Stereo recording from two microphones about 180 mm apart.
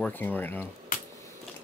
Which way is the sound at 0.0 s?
10° left (ahead or behind).